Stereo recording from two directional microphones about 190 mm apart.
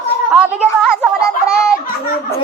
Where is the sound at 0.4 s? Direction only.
5° right (ahead or behind).